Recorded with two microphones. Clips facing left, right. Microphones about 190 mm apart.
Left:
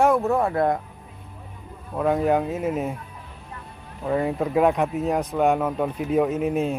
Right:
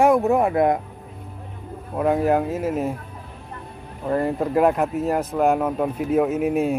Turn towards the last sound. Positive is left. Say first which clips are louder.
# right 2 dB
turn(degrees=-5)  # may be behind; listen again after turning